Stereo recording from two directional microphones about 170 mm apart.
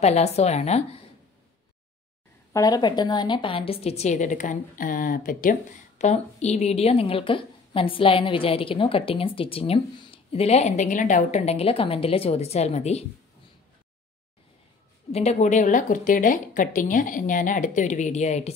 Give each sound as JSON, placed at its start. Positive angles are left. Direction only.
{"t": 0.0, "sound": "a woman's voice", "side_deg": 40}
{"t": 2.5, "sound": "a woman's voice", "side_deg": 20}
{"t": 15.0, "sound": "speech", "side_deg": 40}